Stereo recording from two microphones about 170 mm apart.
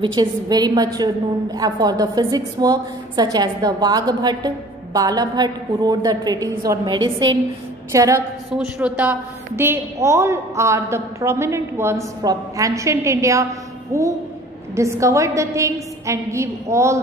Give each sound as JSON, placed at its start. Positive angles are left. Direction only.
{"t": 0.0, "sound": "a woman's voice", "side_deg": -25}
{"t": 7.9, "sound": "a woman's voice", "side_deg": -20}
{"t": 8.5, "sound": "a woman's voice", "side_deg": -5}